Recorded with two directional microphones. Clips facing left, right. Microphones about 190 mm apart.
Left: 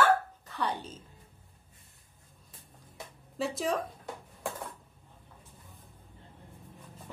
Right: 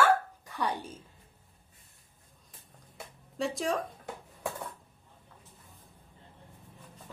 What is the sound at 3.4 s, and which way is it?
Speech, centre (ahead or behind).